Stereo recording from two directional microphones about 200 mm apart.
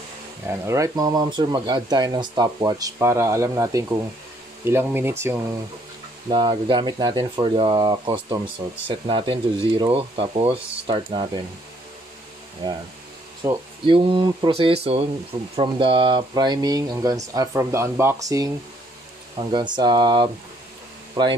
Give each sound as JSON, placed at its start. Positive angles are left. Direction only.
{"t": 0.5, "sound": "speech", "side_deg": -15}
{"t": 6.2, "sound": "speech", "side_deg": -25}
{"t": 12.6, "sound": "speech", "side_deg": -20}